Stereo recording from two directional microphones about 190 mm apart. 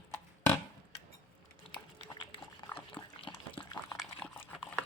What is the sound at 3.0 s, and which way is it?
Dog, 25° left (ahead or behind).